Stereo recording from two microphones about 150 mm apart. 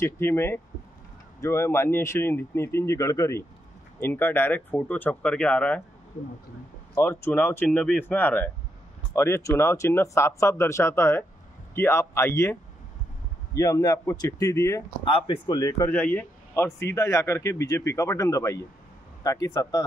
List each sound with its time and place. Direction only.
0.0 s speech: 15° left (ahead or behind)
7.0 s speech: 15° left (ahead or behind)
13.6 s a man's voice: 20° left (ahead or behind)
15.1 s a man's voice: 30° left (ahead or behind)
15.9 s a man's voice: 10° left (ahead or behind)